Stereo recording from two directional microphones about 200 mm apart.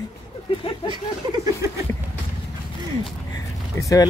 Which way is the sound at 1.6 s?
15° right (ahead or behind).